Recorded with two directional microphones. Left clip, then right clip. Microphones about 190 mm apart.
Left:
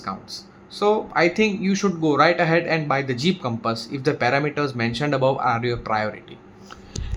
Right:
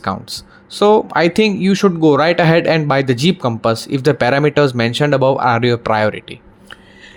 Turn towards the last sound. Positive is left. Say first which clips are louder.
# right 9 dB
turn(degrees=-35)  # may be behind; listen again after turning